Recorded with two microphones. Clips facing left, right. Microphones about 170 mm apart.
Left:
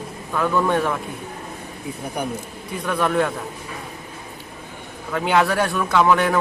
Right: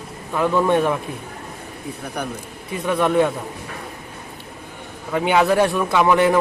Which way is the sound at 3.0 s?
20° right (ahead or behind).